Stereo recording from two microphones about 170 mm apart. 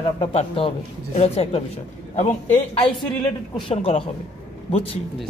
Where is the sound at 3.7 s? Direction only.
35° left (ahead or behind).